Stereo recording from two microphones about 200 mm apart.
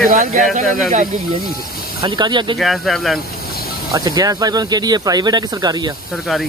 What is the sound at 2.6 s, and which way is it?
Speech, centre (ahead or behind).